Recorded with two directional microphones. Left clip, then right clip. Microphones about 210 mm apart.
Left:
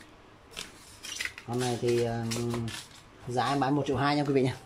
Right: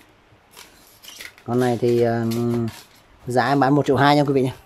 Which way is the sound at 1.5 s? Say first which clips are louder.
Right 10 dB; 40° right (ahead or behind).